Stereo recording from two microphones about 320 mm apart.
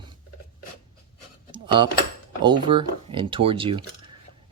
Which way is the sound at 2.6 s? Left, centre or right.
Centre.